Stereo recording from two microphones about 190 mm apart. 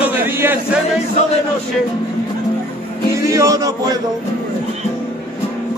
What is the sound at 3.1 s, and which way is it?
Speech, 15° right (ahead or behind).